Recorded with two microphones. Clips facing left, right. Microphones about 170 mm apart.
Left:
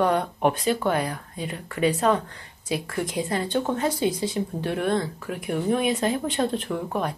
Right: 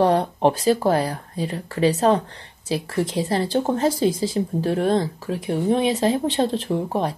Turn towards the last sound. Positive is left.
turn(degrees=-30)  # may be behind; listen again after turning